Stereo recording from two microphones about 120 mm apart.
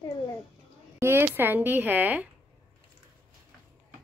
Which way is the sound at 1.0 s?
20° right (ahead or behind).